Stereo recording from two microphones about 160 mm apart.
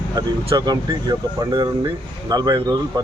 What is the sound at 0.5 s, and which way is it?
Speech, 25° right (ahead or behind).